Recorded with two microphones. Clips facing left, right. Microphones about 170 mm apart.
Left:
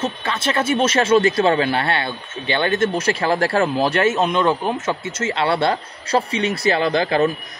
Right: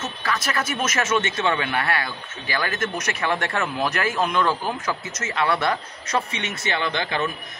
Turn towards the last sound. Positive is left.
turn(degrees=35)  # may be behind; listen again after turning